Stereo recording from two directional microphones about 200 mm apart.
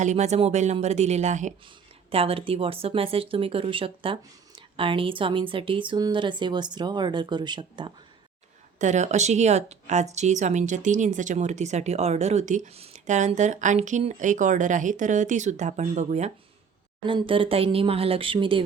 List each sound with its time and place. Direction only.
0.0 s speech: 35° right (ahead or behind)
8.8 s speech: 35° right (ahead or behind)
17.0 s speech: 25° right (ahead or behind)